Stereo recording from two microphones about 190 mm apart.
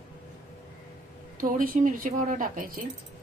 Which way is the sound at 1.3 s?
45° right (ahead or behind).